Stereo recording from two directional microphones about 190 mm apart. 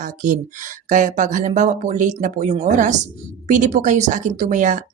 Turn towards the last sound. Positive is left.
turn(degrees=-40)  # may be behind; listen again after turning